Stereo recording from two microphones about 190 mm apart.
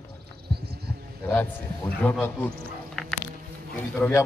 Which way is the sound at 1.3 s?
10° left (ahead or behind).